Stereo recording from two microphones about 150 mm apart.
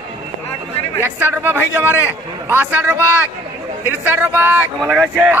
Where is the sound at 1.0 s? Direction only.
15° right (ahead or behind).